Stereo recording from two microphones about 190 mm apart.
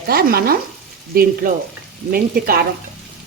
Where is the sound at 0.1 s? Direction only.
55° right (ahead or behind).